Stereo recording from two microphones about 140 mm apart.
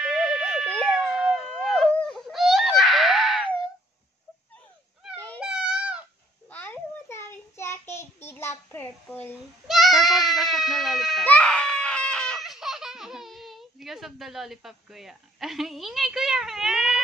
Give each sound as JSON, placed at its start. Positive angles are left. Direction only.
{"t": 0.0, "sound": "a sound", "side_deg": -5}
{"t": 5.4, "sound": "baby cry", "side_deg": -5}
{"t": 6.5, "sound": "child singing", "side_deg": 10}
{"t": 9.7, "sound": "bleat", "side_deg": 0}
{"t": 11.2, "sound": "screaming", "side_deg": 10}